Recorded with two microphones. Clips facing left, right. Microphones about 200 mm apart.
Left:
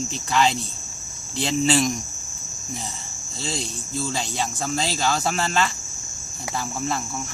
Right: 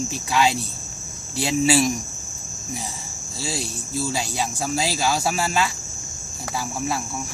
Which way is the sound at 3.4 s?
10° right (ahead or behind).